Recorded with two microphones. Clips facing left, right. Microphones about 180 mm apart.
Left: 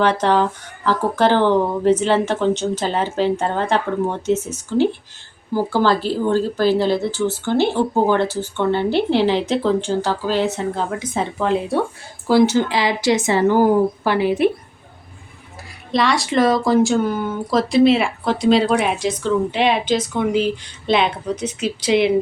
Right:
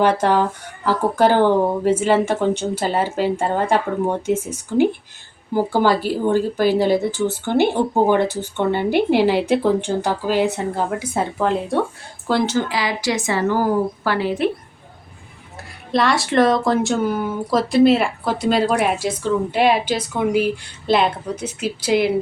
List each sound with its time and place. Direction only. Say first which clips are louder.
0.0 s speech: even; 10° right (ahead or behind)
12.5 s a woman's voice: left 3 dB; 25° left (ahead or behind)
15.9 s speech: even; centre (ahead or behind)